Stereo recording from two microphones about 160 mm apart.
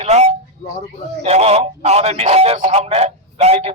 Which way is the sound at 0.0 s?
45° right (ahead or behind).